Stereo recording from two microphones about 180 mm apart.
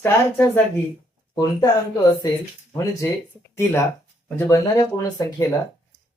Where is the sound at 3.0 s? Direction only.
15° left (ahead or behind).